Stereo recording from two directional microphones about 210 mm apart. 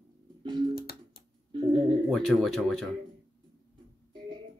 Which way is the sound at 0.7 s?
45° left (ahead or behind).